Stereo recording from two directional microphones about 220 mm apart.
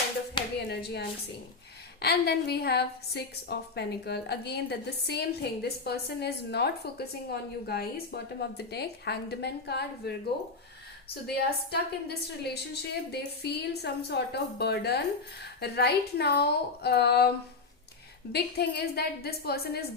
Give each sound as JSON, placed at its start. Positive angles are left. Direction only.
{"t": 0.4, "sound": "a sound", "side_deg": 20}
{"t": 0.7, "sound": "a woman's voice", "side_deg": 50}
{"t": 11.1, "sound": "a woman's voice", "side_deg": 45}